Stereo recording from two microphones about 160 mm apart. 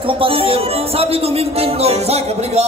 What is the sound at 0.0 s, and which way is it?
Music, 35° right (ahead or behind).